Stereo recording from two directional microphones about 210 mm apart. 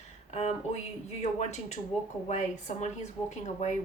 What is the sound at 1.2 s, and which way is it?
Speech, 30° left (ahead or behind).